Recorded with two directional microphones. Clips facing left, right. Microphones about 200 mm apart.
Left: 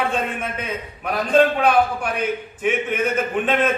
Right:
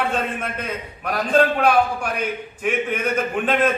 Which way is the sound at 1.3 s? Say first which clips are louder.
Left 1 dB; 5° right (ahead or behind).